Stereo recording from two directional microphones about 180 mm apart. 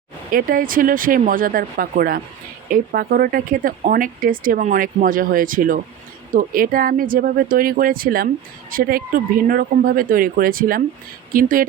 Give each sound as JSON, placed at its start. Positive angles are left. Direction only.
{"t": 0.3, "sound": "speech", "side_deg": -50}